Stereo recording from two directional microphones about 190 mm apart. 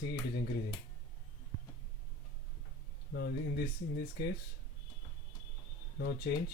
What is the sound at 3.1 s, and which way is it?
Speech, 65° left (ahead or behind).